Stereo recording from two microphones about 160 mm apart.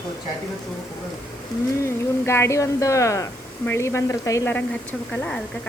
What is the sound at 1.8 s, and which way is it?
Speech, 15° left (ahead or behind).